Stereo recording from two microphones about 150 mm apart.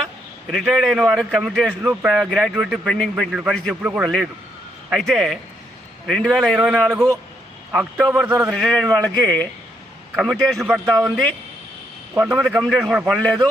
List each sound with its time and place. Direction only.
0.5 s speech: centre (ahead or behind)
4.9 s speech: centre (ahead or behind)
6.9 s a man's voice: 20° right (ahead or behind)
7.7 s a man's voice: 5° right (ahead or behind)
13.1 s a man's voice: 5° left (ahead or behind)